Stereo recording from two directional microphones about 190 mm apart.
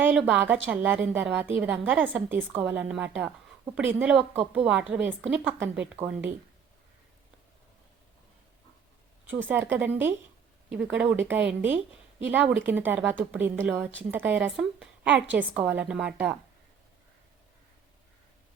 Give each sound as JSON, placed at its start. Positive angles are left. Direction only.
{"t": 0.0, "sound": "a woman's voice", "side_deg": -5}
{"t": 9.3, "sound": "a woman's voice", "side_deg": -10}